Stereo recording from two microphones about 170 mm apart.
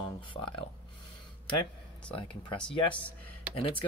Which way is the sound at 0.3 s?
30° left (ahead or behind).